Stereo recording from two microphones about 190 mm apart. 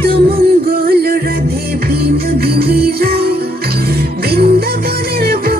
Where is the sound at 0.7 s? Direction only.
50° right (ahead or behind).